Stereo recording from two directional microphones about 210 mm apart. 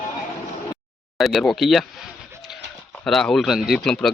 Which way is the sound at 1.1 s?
Centre (ahead or behind).